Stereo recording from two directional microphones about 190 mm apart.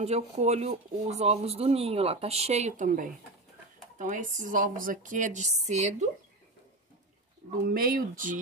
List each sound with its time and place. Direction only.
0.0 s a woman's voice: 35° right (ahead or behind)
7.6 s a woman's voice: 50° right (ahead or behind)